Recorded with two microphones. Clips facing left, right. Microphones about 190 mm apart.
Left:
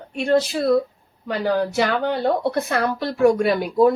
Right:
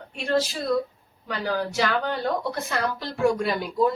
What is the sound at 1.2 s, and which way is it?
A woman's voice, 60° left (ahead or behind).